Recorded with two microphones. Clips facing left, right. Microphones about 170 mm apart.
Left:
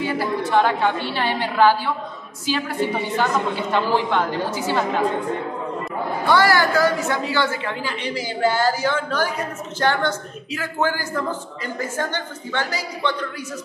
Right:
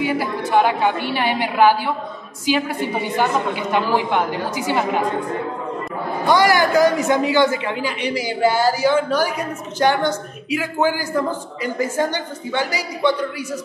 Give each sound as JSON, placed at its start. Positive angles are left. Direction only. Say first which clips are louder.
{"t": 0.0, "sound": "speech", "louder": "right 1 dB", "side_deg": -15}
{"t": 6.2, "sound": "speech", "louder": "right 2 dB", "side_deg": -15}